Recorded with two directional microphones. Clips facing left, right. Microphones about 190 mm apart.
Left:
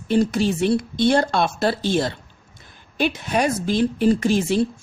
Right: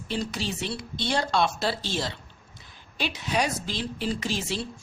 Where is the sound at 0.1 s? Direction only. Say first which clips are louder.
Left 12 dB; 50° left (ahead or behind).